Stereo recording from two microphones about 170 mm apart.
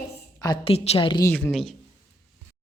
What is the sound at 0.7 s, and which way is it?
Speech, 35° left (ahead or behind).